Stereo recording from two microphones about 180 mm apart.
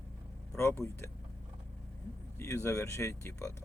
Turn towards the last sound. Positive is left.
turn(degrees=15)  # may be behind; listen again after turning